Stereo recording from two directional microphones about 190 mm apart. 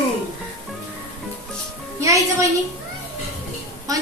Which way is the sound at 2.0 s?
15° right (ahead or behind).